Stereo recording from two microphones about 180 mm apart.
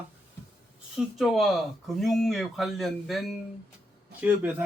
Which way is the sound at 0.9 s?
Centre (ahead or behind).